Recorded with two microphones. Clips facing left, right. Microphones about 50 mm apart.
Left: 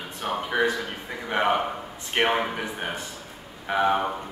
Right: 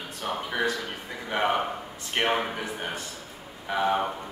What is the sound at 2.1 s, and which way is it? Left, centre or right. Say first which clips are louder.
Speech: left 3 dB; centre.